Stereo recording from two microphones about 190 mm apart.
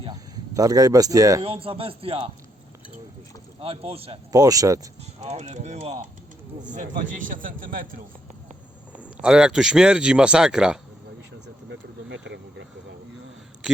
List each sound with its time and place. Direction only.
0.0 s speech: 20° right (ahead or behind)
1.5 s speech: 30° right (ahead or behind)
3.6 s speech: 30° right (ahead or behind)
4.3 s speech: 20° right (ahead or behind)
5.2 s a man's voice: 35° right (ahead or behind)
9.2 s speech: 5° right (ahead or behind)
11.4 s vehicle: 75° right (ahead or behind)